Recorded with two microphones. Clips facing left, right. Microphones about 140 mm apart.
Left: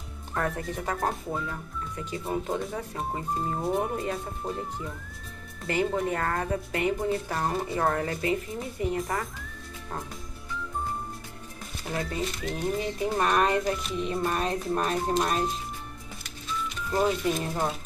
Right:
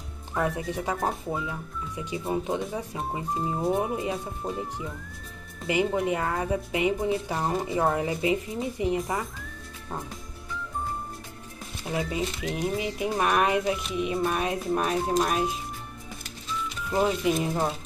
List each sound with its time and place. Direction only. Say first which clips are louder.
0.3 s speech: right 2 dB; 5° right (ahead or behind)
5.7 s speech: right 2 dB; 15° right (ahead or behind)
8.9 s speech: right 2 dB; centre (ahead or behind)
11.8 s speech: right 2 dB; 10° right (ahead or behind)
16.9 s speech: right 1 dB; 10° right (ahead or behind)